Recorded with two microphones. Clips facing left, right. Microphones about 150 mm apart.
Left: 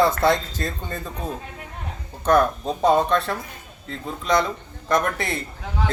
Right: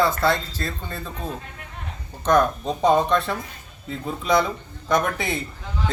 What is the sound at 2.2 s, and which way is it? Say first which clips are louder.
A man's voice: left 1 dB; 5° left (ahead or behind).